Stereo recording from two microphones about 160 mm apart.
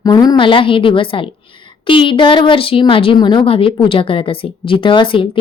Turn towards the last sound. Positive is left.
turn(degrees=30)  # may be behind; listen again after turning